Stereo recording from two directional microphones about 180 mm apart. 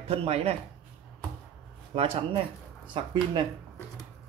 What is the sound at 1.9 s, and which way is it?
Speech, 30° right (ahead or behind).